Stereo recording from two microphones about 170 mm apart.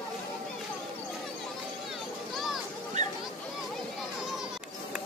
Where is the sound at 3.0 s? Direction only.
45° right (ahead or behind).